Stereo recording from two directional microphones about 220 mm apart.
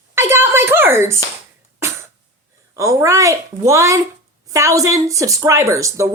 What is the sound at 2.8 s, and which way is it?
Speech, 15° right (ahead or behind).